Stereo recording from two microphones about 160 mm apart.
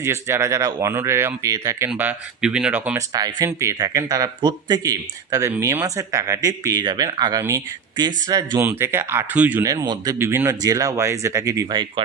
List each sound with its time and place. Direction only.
0.0 s speech: 15° right (ahead or behind)
3.1 s speech: 25° right (ahead or behind)
9.6 s speech: 25° right (ahead or behind)